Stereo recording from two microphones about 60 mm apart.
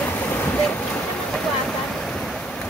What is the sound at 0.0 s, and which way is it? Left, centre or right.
Boat, left.